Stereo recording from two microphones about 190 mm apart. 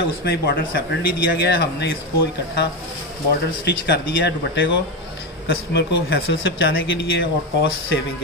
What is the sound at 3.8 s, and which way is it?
Speech, 65° left (ahead or behind).